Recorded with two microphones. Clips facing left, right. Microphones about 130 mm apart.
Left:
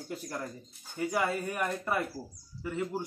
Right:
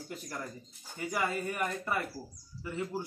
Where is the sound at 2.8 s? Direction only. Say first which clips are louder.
Left 1 dB; 20° left (ahead or behind).